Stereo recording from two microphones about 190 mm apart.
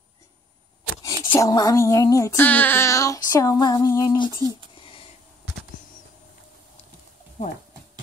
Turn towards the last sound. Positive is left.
turn(degrees=40)  # may be behind; listen again after turning